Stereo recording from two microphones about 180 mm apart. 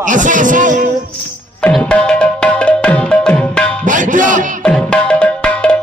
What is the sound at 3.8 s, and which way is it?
Music, 45° right (ahead or behind).